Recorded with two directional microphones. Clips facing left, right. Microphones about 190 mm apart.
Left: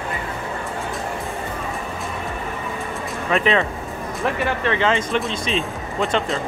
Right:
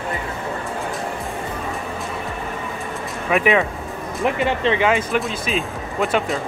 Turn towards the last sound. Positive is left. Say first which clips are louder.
# right 1 dB
turn(degrees=-5)  # may be behind; listen again after turning